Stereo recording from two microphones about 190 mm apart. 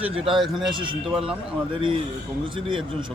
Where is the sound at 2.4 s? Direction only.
25° right (ahead or behind).